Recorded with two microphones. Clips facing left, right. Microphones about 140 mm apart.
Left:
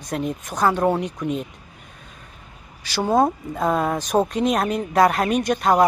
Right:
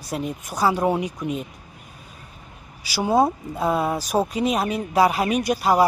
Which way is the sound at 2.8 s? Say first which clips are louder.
Left 1 dB; 10° right (ahead or behind).